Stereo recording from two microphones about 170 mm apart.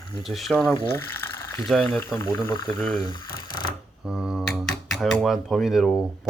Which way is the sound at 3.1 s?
25° left (ahead or behind).